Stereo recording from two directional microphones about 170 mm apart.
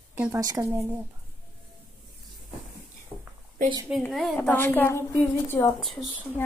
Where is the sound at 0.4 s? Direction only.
20° right (ahead or behind).